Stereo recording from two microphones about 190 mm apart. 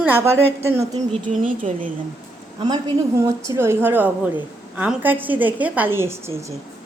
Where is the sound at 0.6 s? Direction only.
15° right (ahead or behind).